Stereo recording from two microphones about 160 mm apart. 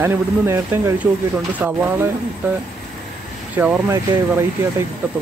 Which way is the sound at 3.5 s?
10° right (ahead or behind).